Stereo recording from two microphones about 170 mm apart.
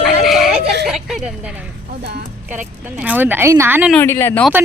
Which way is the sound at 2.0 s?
70° right (ahead or behind).